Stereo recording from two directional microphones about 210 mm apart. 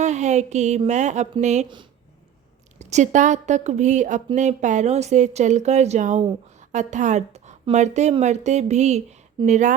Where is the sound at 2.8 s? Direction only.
35° right (ahead or behind).